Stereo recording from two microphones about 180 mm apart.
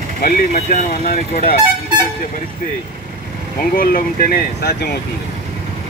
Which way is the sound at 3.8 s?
50° left (ahead or behind).